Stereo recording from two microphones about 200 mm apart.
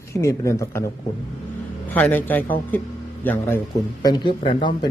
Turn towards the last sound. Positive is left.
turn(degrees=25)  # may be behind; listen again after turning